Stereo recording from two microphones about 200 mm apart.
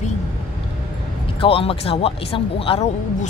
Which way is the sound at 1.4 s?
30° left (ahead or behind).